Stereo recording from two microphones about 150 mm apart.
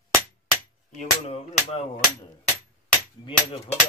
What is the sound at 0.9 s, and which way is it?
Music, 50° left (ahead or behind).